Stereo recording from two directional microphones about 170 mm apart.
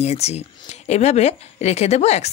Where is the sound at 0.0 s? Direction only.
40° left (ahead or behind).